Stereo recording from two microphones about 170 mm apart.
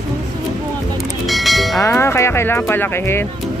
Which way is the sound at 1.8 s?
15° left (ahead or behind).